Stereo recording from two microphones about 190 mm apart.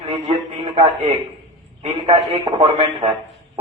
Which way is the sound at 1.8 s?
30° right (ahead or behind).